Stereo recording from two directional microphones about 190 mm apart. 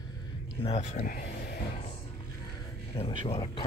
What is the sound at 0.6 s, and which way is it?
Speech, 35° left (ahead or behind).